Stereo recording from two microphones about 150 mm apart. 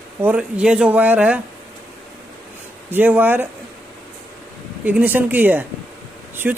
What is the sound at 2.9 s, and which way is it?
Speech, 10° right (ahead or behind).